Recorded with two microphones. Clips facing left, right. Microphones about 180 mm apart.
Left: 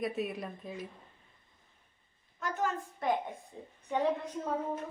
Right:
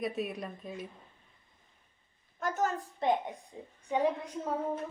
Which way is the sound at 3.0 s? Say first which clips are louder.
Right 3 dB; 25° right (ahead or behind).